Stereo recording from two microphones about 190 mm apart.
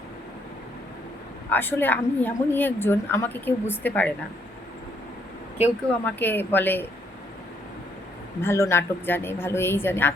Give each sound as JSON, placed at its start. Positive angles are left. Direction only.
{"t": 1.5, "sound": "a woman's voice", "side_deg": 10}
{"t": 6.1, "sound": "a woman's voice", "side_deg": 10}
{"t": 8.4, "sound": "a woman's voice", "side_deg": 15}